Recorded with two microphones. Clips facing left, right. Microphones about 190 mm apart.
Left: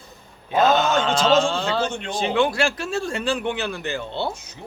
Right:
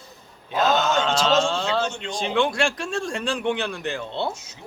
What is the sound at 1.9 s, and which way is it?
Speech, 55° left (ahead or behind).